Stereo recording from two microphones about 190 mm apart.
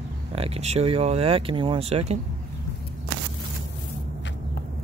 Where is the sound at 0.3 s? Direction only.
35° right (ahead or behind).